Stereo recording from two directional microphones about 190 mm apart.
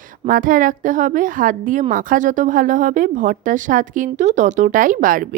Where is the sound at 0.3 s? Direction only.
45° right (ahead or behind).